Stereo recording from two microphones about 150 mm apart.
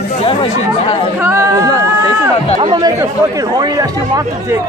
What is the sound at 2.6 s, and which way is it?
Speech, 30° right (ahead or behind).